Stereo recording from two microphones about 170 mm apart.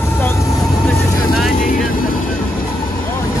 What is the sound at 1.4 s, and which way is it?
Vehicle, 55° left (ahead or behind).